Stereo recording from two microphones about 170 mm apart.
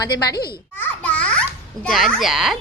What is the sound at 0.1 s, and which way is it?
Speech, 70° left (ahead or behind).